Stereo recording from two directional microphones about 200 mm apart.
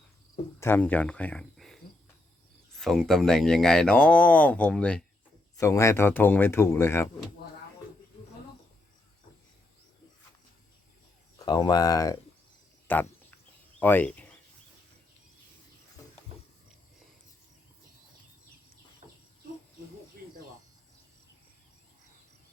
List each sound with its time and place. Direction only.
0.6 s speech: 10° left (ahead or behind)
11.3 s speech: 20° left (ahead or behind)
12.9 s a sound: 10° left (ahead or behind)
19.0 s bird: 30° right (ahead or behind)